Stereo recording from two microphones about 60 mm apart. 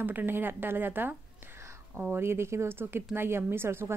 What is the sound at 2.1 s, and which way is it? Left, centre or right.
Speech, right.